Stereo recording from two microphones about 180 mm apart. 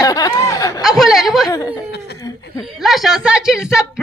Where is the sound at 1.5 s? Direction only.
20° left (ahead or behind).